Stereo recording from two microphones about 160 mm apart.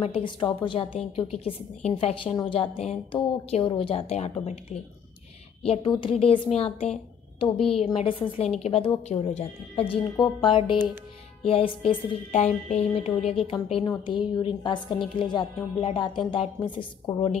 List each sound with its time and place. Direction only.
0.0 s a woman's voice: 35° left (ahead or behind)
5.7 s a woman's voice: 30° left (ahead or behind)
12.3 s a woman's voice: 45° left (ahead or behind); by 17.3 s 30° left (ahead or behind)